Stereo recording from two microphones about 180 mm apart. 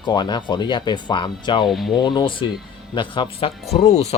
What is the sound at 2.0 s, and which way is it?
Speech, 25° left (ahead or behind).